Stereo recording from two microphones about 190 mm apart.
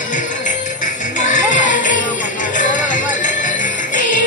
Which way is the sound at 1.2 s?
40° left (ahead or behind).